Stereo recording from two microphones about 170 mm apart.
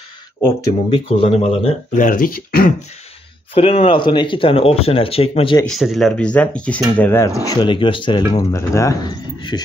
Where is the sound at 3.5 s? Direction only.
35° left (ahead or behind).